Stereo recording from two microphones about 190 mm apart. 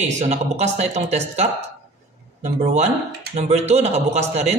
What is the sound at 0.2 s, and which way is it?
Speech, 35° right (ahead or behind).